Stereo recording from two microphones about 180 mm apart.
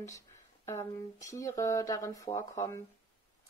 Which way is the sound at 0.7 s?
15° left (ahead or behind).